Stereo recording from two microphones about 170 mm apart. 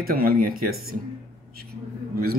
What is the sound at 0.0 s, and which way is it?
Speech, 60° right (ahead or behind).